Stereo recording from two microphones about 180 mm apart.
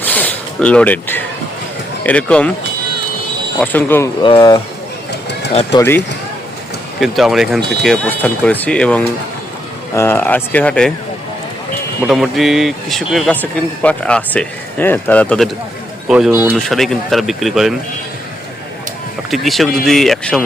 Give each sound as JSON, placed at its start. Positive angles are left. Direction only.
{"t": 0.0, "sound": "a sound", "side_deg": 10}
{"t": 2.0, "sound": "speech", "side_deg": 5}
{"t": 3.6, "sound": "speech", "side_deg": 10}
{"t": 4.2, "sound": "speech", "side_deg": 25}
{"t": 5.7, "sound": "speech", "side_deg": 15}
{"t": 7.0, "sound": "speech", "side_deg": 0}
{"t": 12.0, "sound": "speech", "side_deg": 0}
{"t": 19.3, "sound": "speech", "side_deg": 0}